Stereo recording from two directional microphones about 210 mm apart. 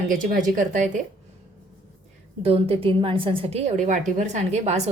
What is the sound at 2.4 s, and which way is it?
A woman's voice, 25° right (ahead or behind).